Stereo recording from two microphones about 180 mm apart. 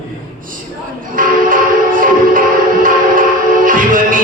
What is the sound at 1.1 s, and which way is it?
Music, 50° right (ahead or behind).